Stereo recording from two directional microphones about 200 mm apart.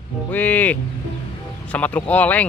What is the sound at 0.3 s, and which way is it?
Speech, 5° left (ahead or behind).